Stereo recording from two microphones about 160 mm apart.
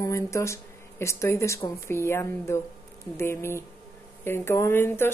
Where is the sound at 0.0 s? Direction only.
20° left (ahead or behind).